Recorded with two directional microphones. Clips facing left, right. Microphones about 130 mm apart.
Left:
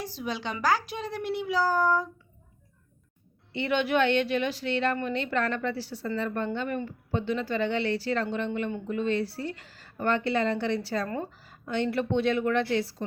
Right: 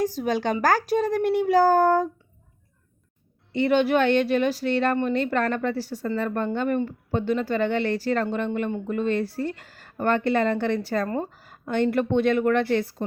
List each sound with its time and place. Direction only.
0.0 s a woman's voice: 45° right (ahead or behind)
3.5 s a woman's voice: 40° right (ahead or behind)